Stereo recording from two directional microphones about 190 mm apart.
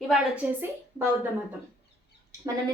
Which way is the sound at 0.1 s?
10° right (ahead or behind).